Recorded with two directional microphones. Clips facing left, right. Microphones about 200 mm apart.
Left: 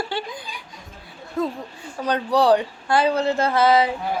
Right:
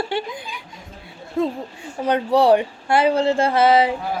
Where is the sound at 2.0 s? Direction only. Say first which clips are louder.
Right 2 dB; 25° right (ahead or behind).